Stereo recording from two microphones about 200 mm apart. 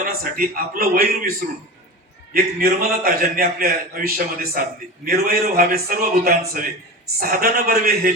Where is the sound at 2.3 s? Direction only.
45° right (ahead or behind).